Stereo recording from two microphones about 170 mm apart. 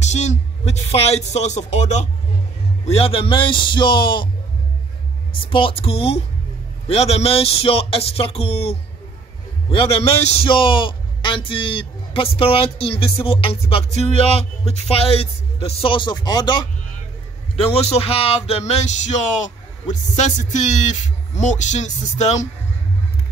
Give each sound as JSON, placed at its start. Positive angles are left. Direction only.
{"t": 0.0, "sound": "a man's voice", "side_deg": 40}
{"t": 5.3, "sound": "a man's voice", "side_deg": 30}
{"t": 17.6, "sound": "speech", "side_deg": 35}